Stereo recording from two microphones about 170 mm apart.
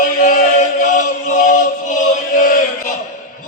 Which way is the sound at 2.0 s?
50° left (ahead or behind).